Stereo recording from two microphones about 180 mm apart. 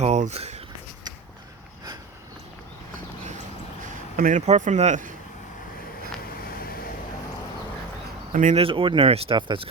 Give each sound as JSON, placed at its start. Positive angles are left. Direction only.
{"t": 0.0, "sound": "speech", "side_deg": -40}
{"t": 4.2, "sound": "speech", "side_deg": -45}
{"t": 8.3, "sound": "speech", "side_deg": -45}
{"t": 8.6, "sound": "speech", "side_deg": -30}